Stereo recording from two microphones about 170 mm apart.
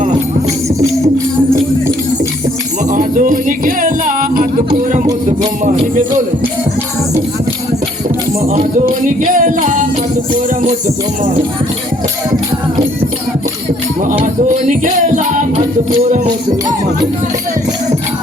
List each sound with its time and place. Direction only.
2.9 s music: 50° right (ahead or behind)
8.4 s music: 40° right (ahead or behind)
14.0 s music: 50° right (ahead or behind)